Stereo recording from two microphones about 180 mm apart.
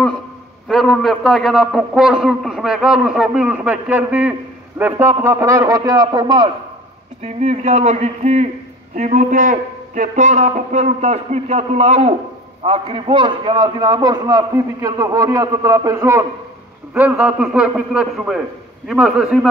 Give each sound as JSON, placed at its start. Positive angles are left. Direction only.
{"t": 0.7, "sound": "a man's voice", "side_deg": 0}
{"t": 7.2, "sound": "a man's voice", "side_deg": -40}